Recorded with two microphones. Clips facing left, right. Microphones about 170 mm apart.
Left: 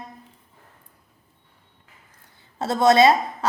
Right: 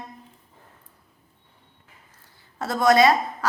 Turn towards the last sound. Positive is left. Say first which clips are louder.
# left 2 dB
turn(degrees=25)  # may be behind; listen again after turning